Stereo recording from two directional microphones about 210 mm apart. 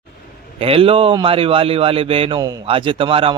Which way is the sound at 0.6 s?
25° right (ahead or behind).